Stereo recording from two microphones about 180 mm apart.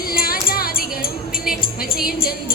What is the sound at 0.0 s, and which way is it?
Music, 55° left (ahead or behind).